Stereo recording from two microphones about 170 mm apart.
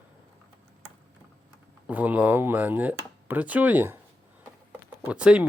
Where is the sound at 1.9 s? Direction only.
10° right (ahead or behind).